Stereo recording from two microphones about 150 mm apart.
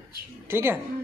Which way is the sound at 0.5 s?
15° right (ahead or behind).